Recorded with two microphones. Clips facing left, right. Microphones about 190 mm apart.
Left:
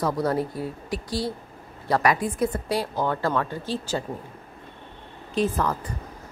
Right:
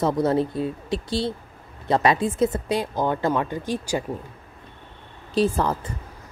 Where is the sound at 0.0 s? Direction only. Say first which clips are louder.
Right 3 dB; 25° right (ahead or behind).